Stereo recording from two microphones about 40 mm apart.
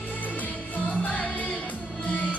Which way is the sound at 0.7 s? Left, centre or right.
Left.